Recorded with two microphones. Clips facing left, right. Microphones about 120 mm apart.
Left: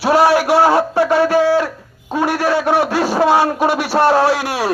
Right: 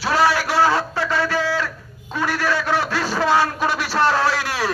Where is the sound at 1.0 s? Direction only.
55° left (ahead or behind).